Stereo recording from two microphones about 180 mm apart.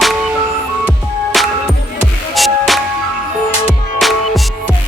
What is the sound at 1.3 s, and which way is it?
Music, centre (ahead or behind).